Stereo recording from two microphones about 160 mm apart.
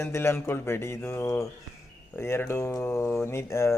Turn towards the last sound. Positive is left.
turn(degrees=15)  # may be behind; listen again after turning